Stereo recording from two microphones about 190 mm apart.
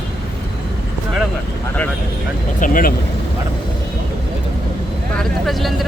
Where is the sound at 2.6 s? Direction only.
45° left (ahead or behind).